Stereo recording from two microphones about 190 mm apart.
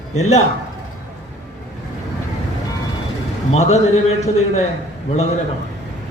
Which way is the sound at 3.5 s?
35° left (ahead or behind).